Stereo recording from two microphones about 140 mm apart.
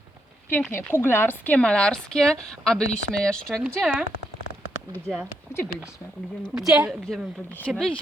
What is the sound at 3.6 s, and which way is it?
Speech, 10° right (ahead or behind).